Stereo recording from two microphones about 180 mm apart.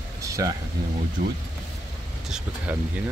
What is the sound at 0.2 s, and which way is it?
Vehicle, 20° right (ahead or behind).